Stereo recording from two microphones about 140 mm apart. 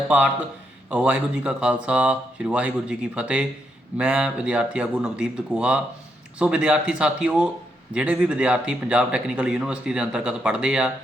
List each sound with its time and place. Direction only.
0.9 s speech: 10° right (ahead or behind)